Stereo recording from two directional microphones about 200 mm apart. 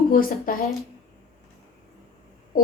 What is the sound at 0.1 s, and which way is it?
Speech, 45° left (ahead or behind).